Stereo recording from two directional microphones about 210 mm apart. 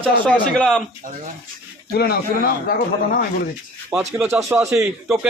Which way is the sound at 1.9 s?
50° left (ahead or behind).